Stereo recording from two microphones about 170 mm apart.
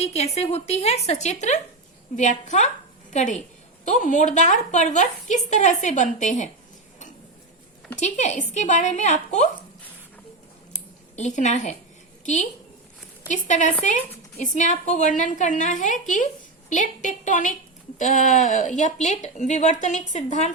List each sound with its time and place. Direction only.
0.0 s a woman's voice: 40° left (ahead or behind)
7.9 s a woman's voice: 45° left (ahead or behind)
11.2 s a woman's voice: 45° left (ahead or behind)